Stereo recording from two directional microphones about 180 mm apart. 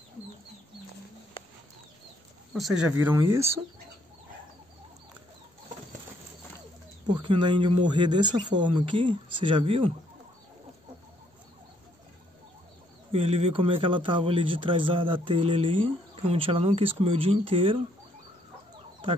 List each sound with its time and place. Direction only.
2.5 s speech: centre (ahead or behind)
7.1 s speech: 25° right (ahead or behind)
13.1 s speech: 35° right (ahead or behind)